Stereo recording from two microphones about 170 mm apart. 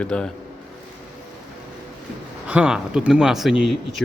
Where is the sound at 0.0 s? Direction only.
5° left (ahead or behind).